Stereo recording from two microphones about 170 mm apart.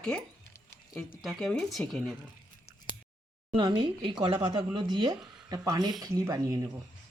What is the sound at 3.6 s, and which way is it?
Speech, 30° right (ahead or behind).